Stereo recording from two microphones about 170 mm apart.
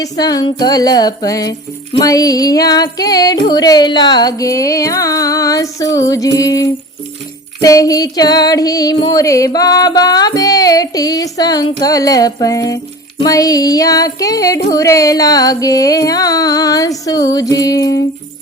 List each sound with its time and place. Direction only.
0.0 s music: 20° left (ahead or behind)